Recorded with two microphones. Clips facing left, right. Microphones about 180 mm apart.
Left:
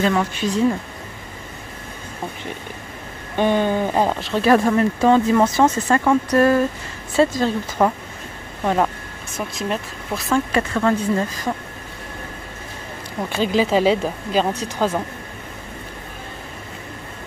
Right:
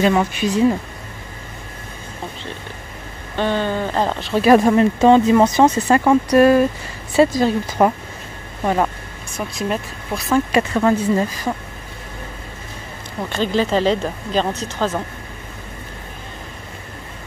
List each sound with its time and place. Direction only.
0.0 s speech: 15° right (ahead or behind)
3.3 s speech: 15° left (ahead or behind)
4.4 s speech: 15° right (ahead or behind)
8.6 s speech: centre (ahead or behind)
10.5 s speech: 15° right (ahead or behind)
13.3 s speech: 5° left (ahead or behind)